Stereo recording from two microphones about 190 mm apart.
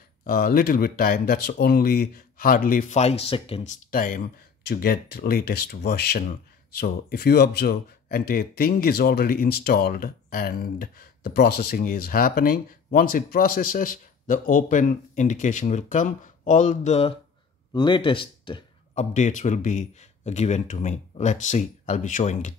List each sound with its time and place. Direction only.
0.2 s speech: 50° left (ahead or behind); by 3.7 s 30° left (ahead or behind)
3.9 s speech: 45° left (ahead or behind)
17.7 s speech: 25° left (ahead or behind)
18.9 s a man's voice: 40° left (ahead or behind)